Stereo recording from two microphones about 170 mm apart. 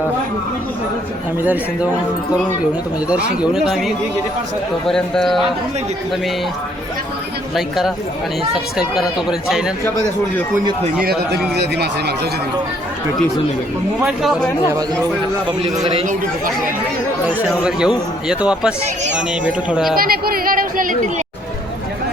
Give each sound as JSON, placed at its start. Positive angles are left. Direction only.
{"t": 3.1, "sound": "speech", "side_deg": -5}
{"t": 7.5, "sound": "speech", "side_deg": 0}
{"t": 9.5, "sound": "speech", "side_deg": -5}
{"t": 11.0, "sound": "a man's voice", "side_deg": -70}
{"t": 14.0, "sound": "speech", "side_deg": 0}
{"t": 15.4, "sound": "a man's voice", "side_deg": -30}
{"t": 17.2, "sound": "speech", "side_deg": -5}
{"t": 20.0, "sound": "a sound", "side_deg": -60}